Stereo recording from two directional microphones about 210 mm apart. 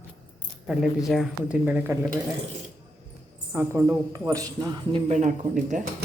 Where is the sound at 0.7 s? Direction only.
Centre (ahead or behind).